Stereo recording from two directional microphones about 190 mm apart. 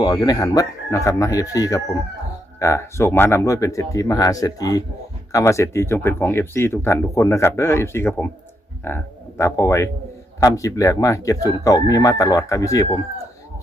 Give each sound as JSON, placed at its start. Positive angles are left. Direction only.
{"t": 0.0, "sound": "speech", "side_deg": 20}